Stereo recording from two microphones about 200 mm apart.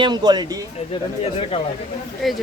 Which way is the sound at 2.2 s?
Centre (ahead or behind).